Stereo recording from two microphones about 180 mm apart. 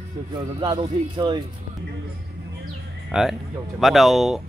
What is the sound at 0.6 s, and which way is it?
Speech, 25° right (ahead or behind).